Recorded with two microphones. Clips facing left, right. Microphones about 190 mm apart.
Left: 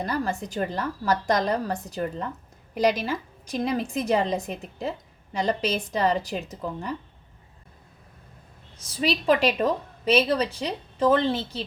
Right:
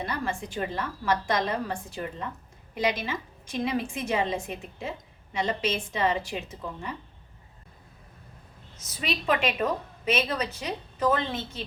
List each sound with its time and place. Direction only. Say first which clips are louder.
0.0 s a woman's voice: left 4 dB; 40° left (ahead or behind)
9.0 s a woman's voice: left 5 dB; 35° left (ahead or behind)